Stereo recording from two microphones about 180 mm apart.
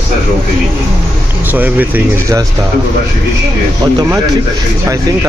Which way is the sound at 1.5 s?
10° right (ahead or behind).